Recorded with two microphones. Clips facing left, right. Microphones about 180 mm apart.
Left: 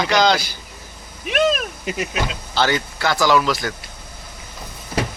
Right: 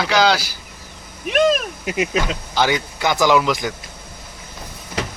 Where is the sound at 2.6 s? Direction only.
15° right (ahead or behind).